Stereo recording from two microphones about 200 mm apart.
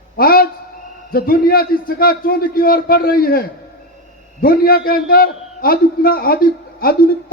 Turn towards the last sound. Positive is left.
turn(degrees=45)  # may be behind; listen again after turning